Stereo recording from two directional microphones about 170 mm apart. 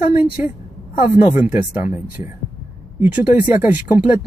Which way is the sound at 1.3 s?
10° right (ahead or behind).